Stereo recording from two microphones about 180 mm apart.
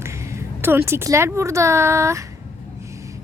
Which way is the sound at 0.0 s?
15° right (ahead or behind).